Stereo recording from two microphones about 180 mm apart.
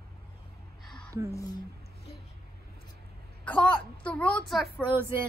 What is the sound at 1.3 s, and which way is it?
Speech, 20° left (ahead or behind).